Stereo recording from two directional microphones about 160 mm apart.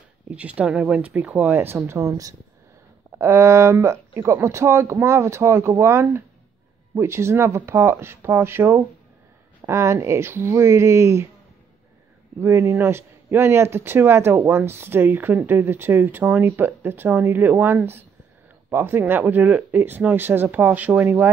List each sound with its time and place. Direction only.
0.4 s speech: 10° right (ahead or behind)
12.4 s speech: 15° right (ahead or behind)